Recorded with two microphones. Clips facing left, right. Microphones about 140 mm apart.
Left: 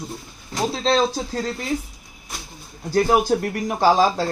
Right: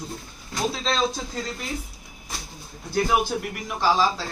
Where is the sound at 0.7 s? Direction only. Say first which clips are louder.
Left 9 dB; 30° left (ahead or behind).